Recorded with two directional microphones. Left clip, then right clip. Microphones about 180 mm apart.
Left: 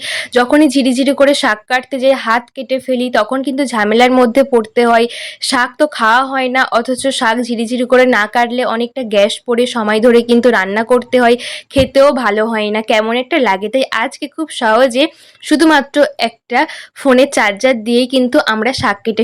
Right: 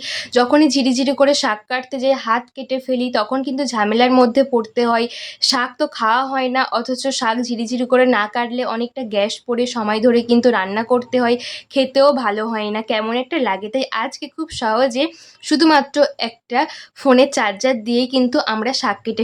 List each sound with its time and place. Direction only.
0.0 s speech: 20° left (ahead or behind)